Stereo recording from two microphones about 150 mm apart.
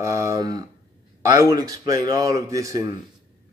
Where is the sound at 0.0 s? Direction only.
20° right (ahead or behind).